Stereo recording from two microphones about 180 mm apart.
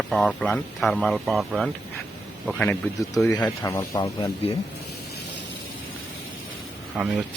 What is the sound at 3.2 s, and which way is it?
Speech, 20° left (ahead or behind).